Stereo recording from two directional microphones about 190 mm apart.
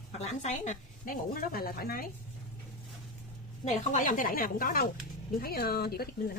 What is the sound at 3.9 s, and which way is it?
Speech, 45° left (ahead or behind).